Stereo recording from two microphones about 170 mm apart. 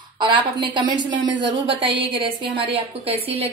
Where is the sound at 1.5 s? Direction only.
30° right (ahead or behind).